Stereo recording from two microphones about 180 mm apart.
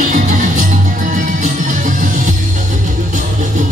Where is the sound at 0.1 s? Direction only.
45° right (ahead or behind).